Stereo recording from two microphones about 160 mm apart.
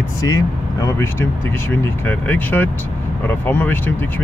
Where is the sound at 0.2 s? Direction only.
20° left (ahead or behind).